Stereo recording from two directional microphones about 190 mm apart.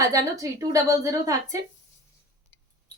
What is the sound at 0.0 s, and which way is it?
A woman's voice, 15° right (ahead or behind).